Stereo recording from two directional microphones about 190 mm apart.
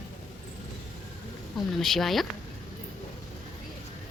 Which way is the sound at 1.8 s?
Centre (ahead or behind).